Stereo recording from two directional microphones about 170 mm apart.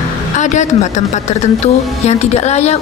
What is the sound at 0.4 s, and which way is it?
A woman's voice, 45° left (ahead or behind).